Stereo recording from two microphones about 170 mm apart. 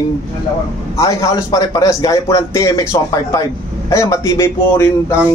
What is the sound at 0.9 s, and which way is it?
A man's voice, 20° left (ahead or behind).